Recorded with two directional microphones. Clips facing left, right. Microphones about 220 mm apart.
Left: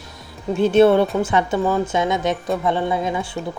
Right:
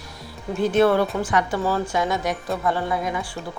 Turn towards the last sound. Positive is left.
turn(degrees=25)  # may be behind; listen again after turning